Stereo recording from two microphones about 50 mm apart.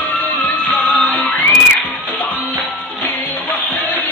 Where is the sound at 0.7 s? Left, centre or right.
Left.